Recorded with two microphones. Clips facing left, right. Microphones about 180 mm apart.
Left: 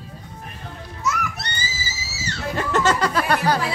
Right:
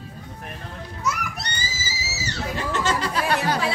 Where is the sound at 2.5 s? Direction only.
40° left (ahead or behind).